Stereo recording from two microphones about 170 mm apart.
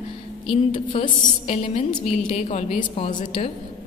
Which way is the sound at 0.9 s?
35° left (ahead or behind).